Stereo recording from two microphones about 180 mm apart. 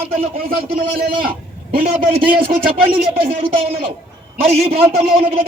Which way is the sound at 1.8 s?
35° right (ahead or behind).